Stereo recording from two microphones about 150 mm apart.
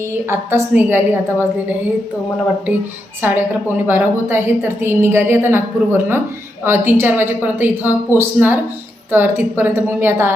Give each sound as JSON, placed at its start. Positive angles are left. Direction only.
{"t": 0.3, "sound": "a woman's voice", "side_deg": -15}
{"t": 3.2, "sound": "a woman's voice", "side_deg": -15}
{"t": 6.7, "sound": "a woman's voice", "side_deg": -15}